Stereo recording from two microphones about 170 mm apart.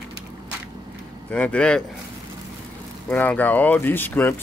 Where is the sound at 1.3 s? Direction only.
5° left (ahead or behind).